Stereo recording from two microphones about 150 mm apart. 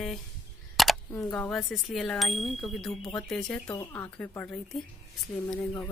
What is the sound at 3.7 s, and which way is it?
Speech, 25° left (ahead or behind).